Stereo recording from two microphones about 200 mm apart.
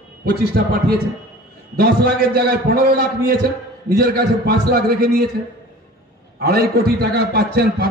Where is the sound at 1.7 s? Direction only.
50° right (ahead or behind).